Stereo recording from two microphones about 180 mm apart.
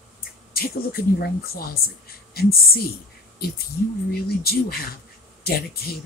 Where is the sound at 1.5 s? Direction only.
60° left (ahead or behind).